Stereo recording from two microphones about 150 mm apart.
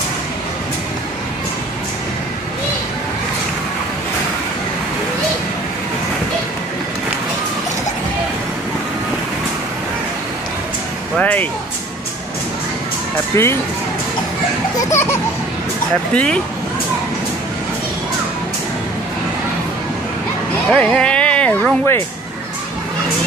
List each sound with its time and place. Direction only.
11.1 s speech: 10° left (ahead or behind)
13.3 s speech: 20° left (ahead or behind)
14.9 s children playing: 15° left (ahead or behind)
16.1 s speech: 5° left (ahead or behind)
20.7 s speech: 5° left (ahead or behind)